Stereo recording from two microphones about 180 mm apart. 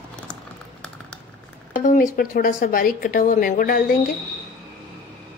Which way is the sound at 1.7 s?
50° left (ahead or behind).